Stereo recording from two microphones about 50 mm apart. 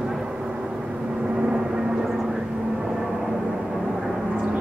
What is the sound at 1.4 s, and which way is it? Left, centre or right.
Vehicle, centre.